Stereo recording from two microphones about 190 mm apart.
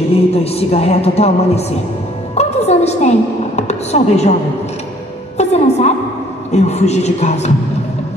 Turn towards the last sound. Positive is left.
turn(degrees=35)  # may be behind; listen again after turning